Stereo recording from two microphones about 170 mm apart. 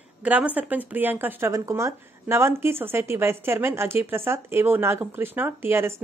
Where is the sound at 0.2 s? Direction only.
5° right (ahead or behind).